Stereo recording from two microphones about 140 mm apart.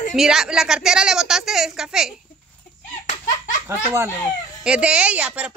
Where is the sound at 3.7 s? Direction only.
20° right (ahead or behind).